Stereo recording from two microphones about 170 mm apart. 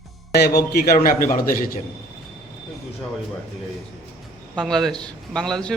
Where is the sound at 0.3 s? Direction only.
70° left (ahead or behind).